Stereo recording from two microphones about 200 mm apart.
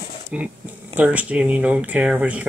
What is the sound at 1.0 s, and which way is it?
Speech, 5° right (ahead or behind).